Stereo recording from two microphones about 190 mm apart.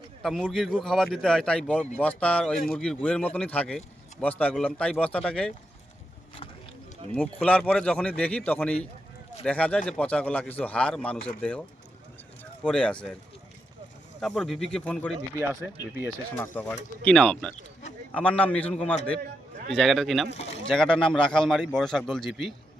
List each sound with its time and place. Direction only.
0.2 s speech: centre (ahead or behind)
7.1 s speech: 5° left (ahead or behind)
12.6 s speech: 5° left (ahead or behind)
14.2 s speech: centre (ahead or behind)
20.3 s speech: 35° left (ahead or behind)
20.7 s speech: 5° left (ahead or behind)